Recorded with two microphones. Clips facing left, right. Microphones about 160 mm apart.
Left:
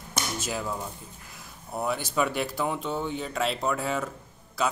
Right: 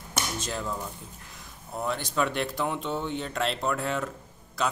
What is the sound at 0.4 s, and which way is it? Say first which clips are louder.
Speech: left 1 dB; 5° left (ahead or behind).